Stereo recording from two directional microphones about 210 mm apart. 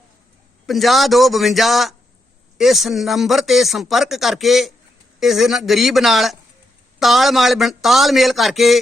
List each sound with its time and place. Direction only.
0.7 s speech: centre (ahead or behind)